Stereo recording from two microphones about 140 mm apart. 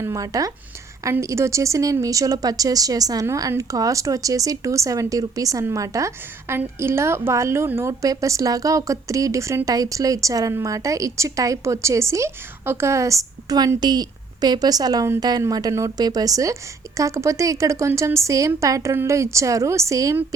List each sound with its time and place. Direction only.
0.0 s a woman's voice: 25° right (ahead or behind)